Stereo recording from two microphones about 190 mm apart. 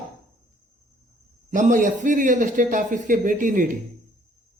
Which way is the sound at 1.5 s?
40° right (ahead or behind).